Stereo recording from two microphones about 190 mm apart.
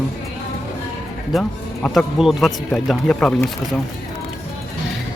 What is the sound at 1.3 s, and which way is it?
Speech, centre (ahead or behind).